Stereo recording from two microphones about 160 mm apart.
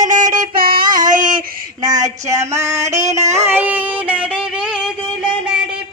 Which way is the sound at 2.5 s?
15° right (ahead or behind).